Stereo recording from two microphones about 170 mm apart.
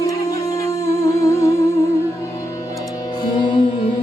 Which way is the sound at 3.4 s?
30° left (ahead or behind).